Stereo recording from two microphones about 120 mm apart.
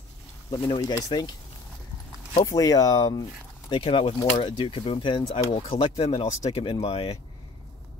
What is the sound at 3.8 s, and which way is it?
Speech, 60° left (ahead or behind).